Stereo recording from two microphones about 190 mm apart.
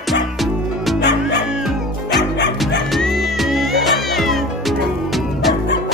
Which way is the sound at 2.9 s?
Centre (ahead or behind).